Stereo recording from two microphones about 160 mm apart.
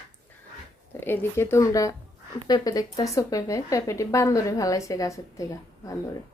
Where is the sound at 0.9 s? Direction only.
15° left (ahead or behind).